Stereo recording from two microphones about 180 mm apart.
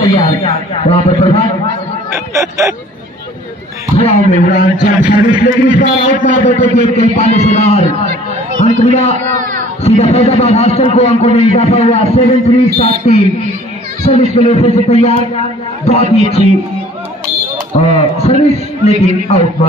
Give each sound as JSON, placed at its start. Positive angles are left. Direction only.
{"t": 0.0, "sound": "a man's voice", "side_deg": 30}
{"t": 2.1, "sound": "a sound", "side_deg": -15}
{"t": 3.9, "sound": "a man's voice", "side_deg": 35}
{"t": 9.3, "sound": "a sound", "side_deg": -45}
{"t": 9.8, "sound": "a man's voice", "side_deg": 35}
{"t": 17.7, "sound": "a man's voice", "side_deg": 35}